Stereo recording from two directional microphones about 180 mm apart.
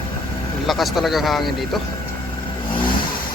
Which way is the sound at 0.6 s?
Centre (ahead or behind).